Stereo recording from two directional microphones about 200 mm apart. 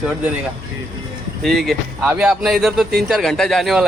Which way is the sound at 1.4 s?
Centre (ahead or behind).